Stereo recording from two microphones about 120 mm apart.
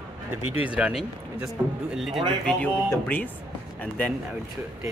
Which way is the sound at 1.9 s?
Centre (ahead or behind).